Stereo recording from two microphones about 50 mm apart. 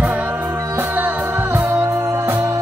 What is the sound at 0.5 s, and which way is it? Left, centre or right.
Music, right.